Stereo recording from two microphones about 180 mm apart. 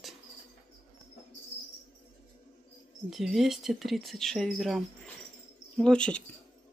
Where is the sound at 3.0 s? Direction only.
Centre (ahead or behind).